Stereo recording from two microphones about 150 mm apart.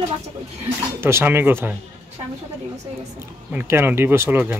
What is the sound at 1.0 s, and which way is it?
Speech, 15° right (ahead or behind).